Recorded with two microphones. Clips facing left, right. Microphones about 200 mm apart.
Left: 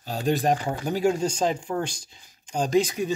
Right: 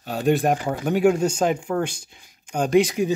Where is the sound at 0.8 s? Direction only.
65° right (ahead or behind).